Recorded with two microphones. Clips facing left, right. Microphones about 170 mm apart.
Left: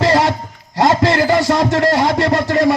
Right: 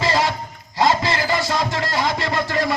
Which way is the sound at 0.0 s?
70° left (ahead or behind).